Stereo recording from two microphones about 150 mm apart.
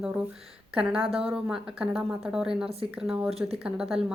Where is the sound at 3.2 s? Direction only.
40° right (ahead or behind).